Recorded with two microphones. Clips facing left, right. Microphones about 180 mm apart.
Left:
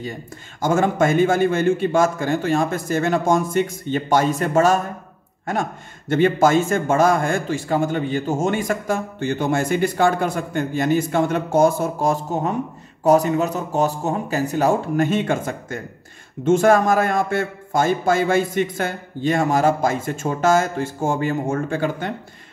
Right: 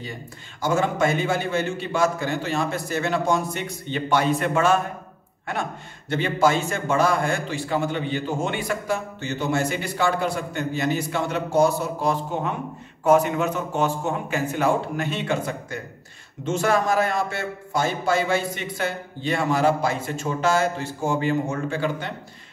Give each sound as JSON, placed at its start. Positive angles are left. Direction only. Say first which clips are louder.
{"t": 0.6, "sound": "a man's voice", "louder": "left 4 dB", "side_deg": 50}